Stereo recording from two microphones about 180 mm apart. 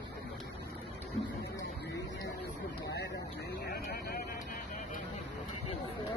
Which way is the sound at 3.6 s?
60° left (ahead or behind).